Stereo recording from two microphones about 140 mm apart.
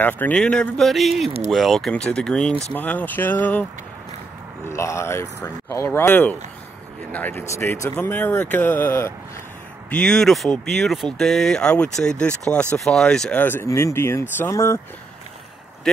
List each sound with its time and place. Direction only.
0.0 s speech: 10° left (ahead or behind)
4.6 s speech: 20° left (ahead or behind)